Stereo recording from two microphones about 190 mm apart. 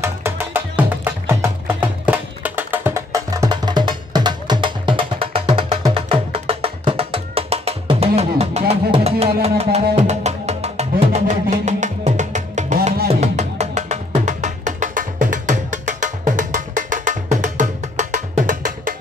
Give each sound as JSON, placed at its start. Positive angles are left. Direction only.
{"t": 0.0, "sound": "music", "side_deg": -10}